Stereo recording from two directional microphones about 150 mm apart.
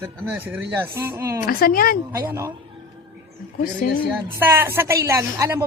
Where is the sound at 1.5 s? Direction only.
75° left (ahead or behind).